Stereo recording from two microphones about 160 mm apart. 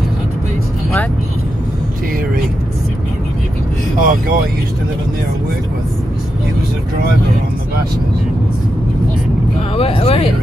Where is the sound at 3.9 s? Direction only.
60° right (ahead or behind).